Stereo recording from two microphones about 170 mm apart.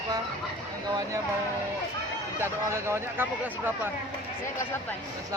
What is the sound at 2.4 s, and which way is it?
Speech, 15° right (ahead or behind).